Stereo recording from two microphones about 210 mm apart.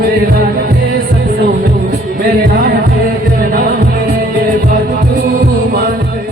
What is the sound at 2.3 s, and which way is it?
Music, 50° right (ahead or behind).